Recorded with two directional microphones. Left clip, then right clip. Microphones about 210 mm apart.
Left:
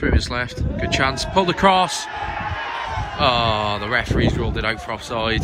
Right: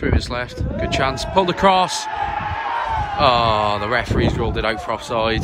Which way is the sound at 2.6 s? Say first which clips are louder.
Right 4 dB; 25° right (ahead or behind).